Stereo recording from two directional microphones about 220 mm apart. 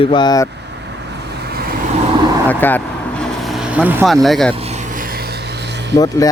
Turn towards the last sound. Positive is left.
turn(degrees=15)  # may be behind; listen again after turning